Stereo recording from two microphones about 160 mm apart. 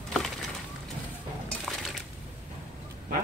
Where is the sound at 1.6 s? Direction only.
Centre (ahead or behind).